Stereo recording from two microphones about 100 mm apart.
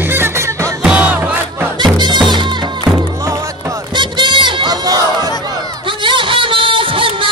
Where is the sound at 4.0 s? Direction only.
50° right (ahead or behind).